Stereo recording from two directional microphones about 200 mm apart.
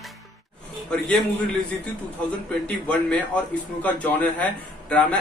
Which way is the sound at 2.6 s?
5° left (ahead or behind).